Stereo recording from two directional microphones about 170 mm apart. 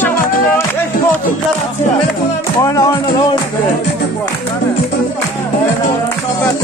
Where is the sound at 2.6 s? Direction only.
20° left (ahead or behind).